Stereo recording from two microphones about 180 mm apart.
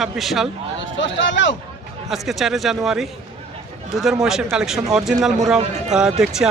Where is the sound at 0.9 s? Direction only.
90° left.